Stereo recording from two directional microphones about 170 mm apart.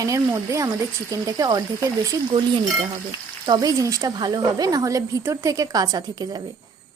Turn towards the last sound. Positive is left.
turn(degrees=-25)  # may be behind; listen again after turning